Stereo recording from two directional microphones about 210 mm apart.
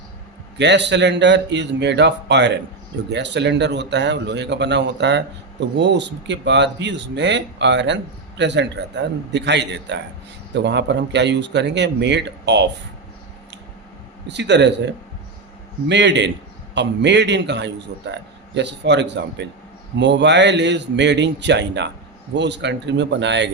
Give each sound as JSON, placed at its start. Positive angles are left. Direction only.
{"t": 0.6, "sound": "a man's voice", "side_deg": -55}
{"t": 14.3, "sound": "a man's voice", "side_deg": -55}